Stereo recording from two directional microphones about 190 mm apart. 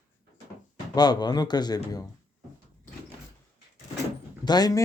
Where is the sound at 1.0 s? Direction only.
20° left (ahead or behind).